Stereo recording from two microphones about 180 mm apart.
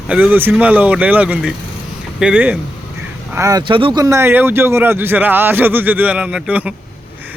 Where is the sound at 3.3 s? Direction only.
15° right (ahead or behind).